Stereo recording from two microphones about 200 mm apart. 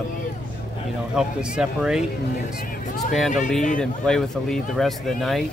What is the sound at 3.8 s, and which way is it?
Speech, centre (ahead or behind).